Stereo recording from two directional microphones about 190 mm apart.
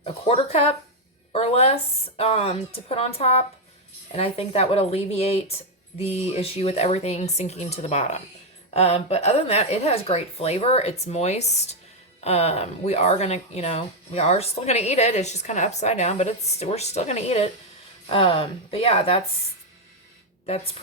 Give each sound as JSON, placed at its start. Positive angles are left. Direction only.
{"t": 0.0, "sound": "speech", "side_deg": 35}